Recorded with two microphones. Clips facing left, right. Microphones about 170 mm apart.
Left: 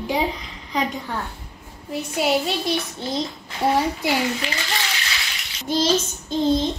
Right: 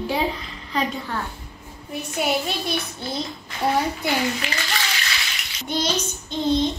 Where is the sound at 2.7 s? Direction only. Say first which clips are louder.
Left 3 dB; 15° left (ahead or behind).